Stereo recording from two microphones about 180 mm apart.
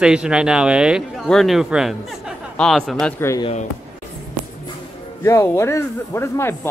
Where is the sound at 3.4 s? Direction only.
35° left (ahead or behind).